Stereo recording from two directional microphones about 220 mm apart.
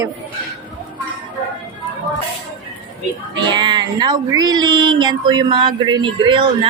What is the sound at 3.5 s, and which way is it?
A woman's voice, 20° right (ahead or behind).